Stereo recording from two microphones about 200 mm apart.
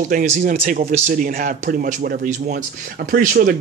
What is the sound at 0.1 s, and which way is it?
A man's voice, 35° right (ahead or behind).